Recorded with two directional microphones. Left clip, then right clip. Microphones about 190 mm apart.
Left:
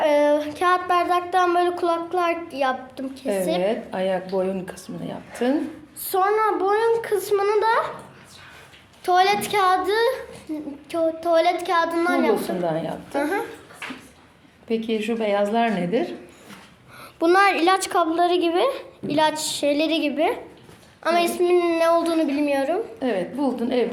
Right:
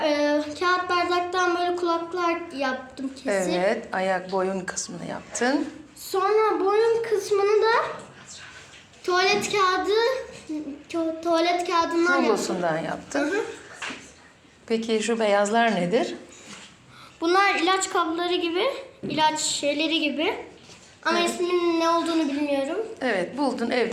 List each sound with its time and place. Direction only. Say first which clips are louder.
0.1 s a sound: left 5 dB; 40° left (ahead or behind)
3.6 s a woman's voice: left 1 dB; 25° left (ahead or behind)
9.0 s a child's voice: left 3 dB; 40° left (ahead or behind)
12.1 s a woman's voice: left 1 dB; 20° left (ahead or behind)
14.7 s speech: even; 5° left (ahead or behind)
17.2 s a woman's voice: left 3 dB; 60° left (ahead or behind)
23.0 s a woman's voice: left 1 dB; 10° left (ahead or behind)